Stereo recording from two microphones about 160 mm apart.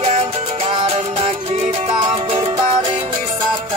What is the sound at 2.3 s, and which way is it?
Music, 35° right (ahead or behind).